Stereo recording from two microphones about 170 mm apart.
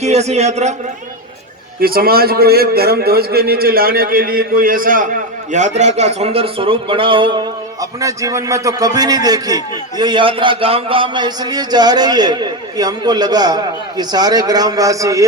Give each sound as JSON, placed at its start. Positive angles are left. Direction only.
{"t": 0.0, "sound": "a man's voice", "side_deg": -40}
{"t": 1.8, "sound": "a man's voice", "side_deg": -60}